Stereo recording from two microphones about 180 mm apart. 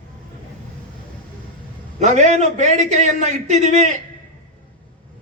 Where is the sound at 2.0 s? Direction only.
40° right (ahead or behind).